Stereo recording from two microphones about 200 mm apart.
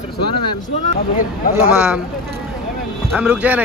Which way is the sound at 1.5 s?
5° right (ahead or behind).